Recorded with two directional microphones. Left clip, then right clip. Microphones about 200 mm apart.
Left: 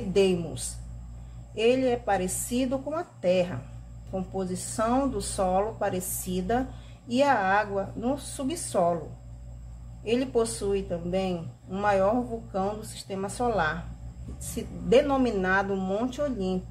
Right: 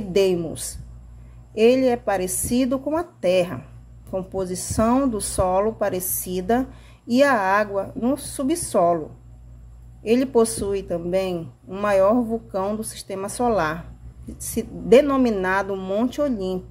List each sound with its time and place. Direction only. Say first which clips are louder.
0.1 s speech: right 5 dB; 40° right (ahead or behind)
10.0 s speech: right 7 dB; 40° right (ahead or behind)